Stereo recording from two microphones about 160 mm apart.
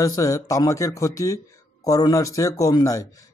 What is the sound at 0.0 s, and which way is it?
Speech, 20° left (ahead or behind).